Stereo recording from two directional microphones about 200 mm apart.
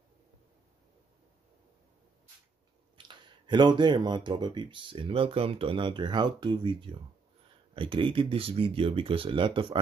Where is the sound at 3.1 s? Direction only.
20° right (ahead or behind).